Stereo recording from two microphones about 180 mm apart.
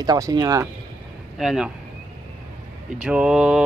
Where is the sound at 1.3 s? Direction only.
5° right (ahead or behind).